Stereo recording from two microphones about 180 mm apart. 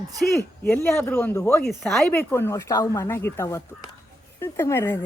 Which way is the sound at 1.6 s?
Centre (ahead or behind).